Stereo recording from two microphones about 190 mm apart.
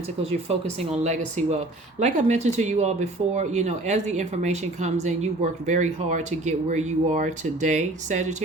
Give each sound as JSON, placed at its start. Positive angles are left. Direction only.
{"t": 0.2, "sound": "speech", "side_deg": -30}